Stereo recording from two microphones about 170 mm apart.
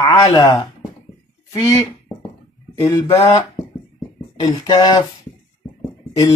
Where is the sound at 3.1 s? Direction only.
40° left (ahead or behind).